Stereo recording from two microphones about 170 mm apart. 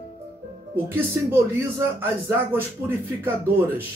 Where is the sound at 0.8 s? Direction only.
10° right (ahead or behind).